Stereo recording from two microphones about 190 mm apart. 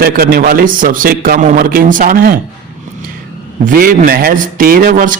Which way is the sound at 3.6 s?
45° right (ahead or behind).